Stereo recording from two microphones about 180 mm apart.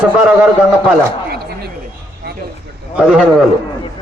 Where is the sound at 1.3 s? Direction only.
60° right (ahead or behind).